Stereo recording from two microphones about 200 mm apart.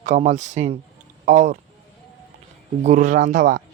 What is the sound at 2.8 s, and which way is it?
Speech, 40° right (ahead or behind).